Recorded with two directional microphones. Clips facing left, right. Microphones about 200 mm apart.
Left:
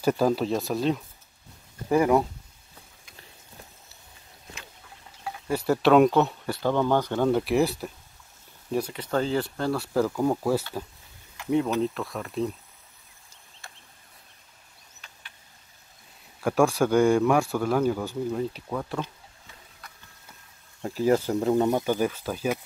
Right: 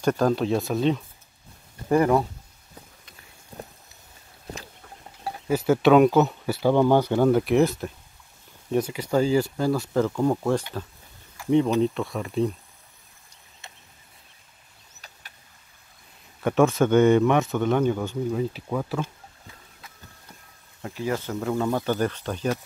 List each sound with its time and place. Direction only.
0.0 s speech: 5° left (ahead or behind)
4.5 s a sound: 40° right (ahead or behind)
5.5 s speech: centre (ahead or behind)
9.1 s speech: 5° right (ahead or behind)
11.8 s speech: centre (ahead or behind)
16.3 s speech: centre (ahead or behind)
20.8 s speech: 35° left (ahead or behind)
21.5 s speech: 20° left (ahead or behind)
21.9 s speech: 5° left (ahead or behind)